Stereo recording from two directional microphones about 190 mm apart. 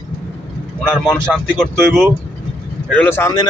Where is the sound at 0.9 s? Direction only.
Centre (ahead or behind).